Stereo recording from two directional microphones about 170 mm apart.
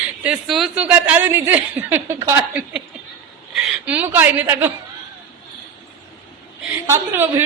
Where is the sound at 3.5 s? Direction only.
5° right (ahead or behind).